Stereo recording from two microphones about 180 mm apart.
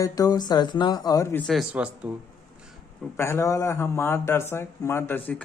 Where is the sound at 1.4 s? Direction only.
Centre (ahead or behind).